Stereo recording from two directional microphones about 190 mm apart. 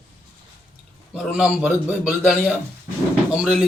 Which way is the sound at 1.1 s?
5° right (ahead or behind).